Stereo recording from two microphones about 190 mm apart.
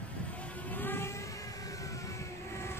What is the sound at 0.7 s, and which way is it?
Vehicle, 10° left (ahead or behind).